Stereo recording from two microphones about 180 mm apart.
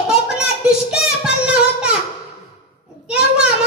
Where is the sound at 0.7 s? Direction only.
5° right (ahead or behind).